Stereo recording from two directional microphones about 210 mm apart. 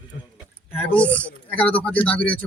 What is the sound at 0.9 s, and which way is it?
Speech, 5° left (ahead or behind).